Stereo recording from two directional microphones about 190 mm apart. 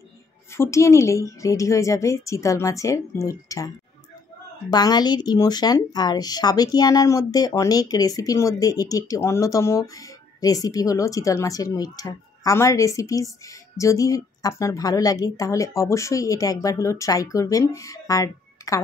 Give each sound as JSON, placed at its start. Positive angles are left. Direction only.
{"t": 0.5, "sound": "a woman's voice", "side_deg": 15}